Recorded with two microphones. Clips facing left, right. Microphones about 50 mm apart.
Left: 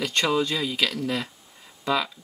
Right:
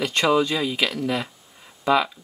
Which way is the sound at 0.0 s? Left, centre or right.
Right.